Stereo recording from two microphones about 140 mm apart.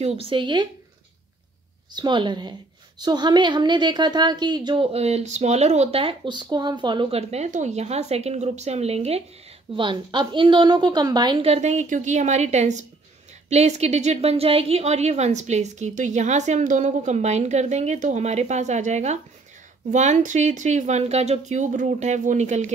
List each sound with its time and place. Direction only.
0.0 s a woman's voice: 45° right (ahead or behind)
2.0 s a woman's voice: 35° right (ahead or behind)
9.8 s a woman's voice: 35° right (ahead or behind)
11.4 s a woman's voice: 50° right (ahead or behind)